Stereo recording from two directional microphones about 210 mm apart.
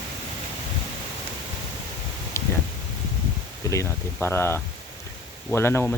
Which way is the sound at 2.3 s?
15° left (ahead or behind).